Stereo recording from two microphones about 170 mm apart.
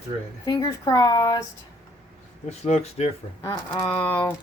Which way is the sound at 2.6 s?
40° left (ahead or behind).